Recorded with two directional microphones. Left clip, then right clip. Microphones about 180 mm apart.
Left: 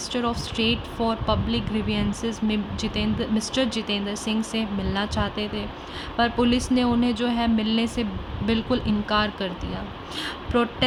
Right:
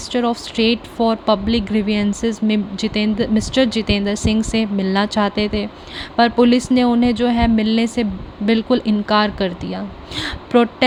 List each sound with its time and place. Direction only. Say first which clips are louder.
0.1 s speech: right 8 dB; 35° right (ahead or behind)